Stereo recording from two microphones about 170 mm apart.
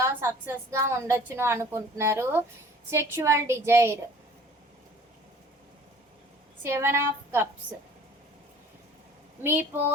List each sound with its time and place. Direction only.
0.0 s a woman's voice: 15° right (ahead or behind)
6.6 s a woman's voice: 15° right (ahead or behind)
9.4 s a woman's voice: 10° right (ahead or behind)